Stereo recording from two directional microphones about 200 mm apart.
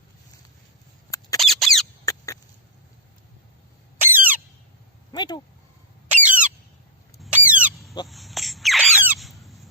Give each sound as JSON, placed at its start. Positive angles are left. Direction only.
{"t": 1.4, "sound": "squeak", "side_deg": 0}
{"t": 2.0, "sound": "rodents", "side_deg": 15}
{"t": 4.0, "sound": "squeal", "side_deg": -10}
{"t": 5.1, "sound": "speech", "side_deg": 20}
{"t": 6.1, "sound": "a sound", "side_deg": -5}